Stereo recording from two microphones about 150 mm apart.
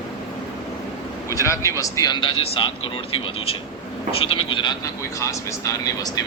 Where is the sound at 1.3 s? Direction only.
20° left (ahead or behind); by 2.7 s 35° left (ahead or behind).